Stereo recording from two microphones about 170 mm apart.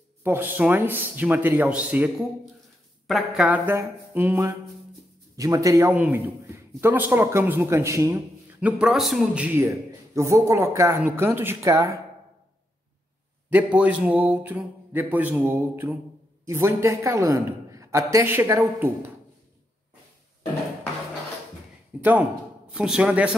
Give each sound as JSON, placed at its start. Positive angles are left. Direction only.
{"t": 0.2, "sound": "a man's voice", "side_deg": -10}
{"t": 8.5, "sound": "a man's voice", "side_deg": -5}
{"t": 13.5, "sound": "a man's voice", "side_deg": -10}
{"t": 21.9, "sound": "a man's voice", "side_deg": -5}